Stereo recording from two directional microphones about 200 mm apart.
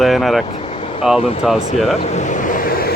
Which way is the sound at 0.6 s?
30° left (ahead or behind).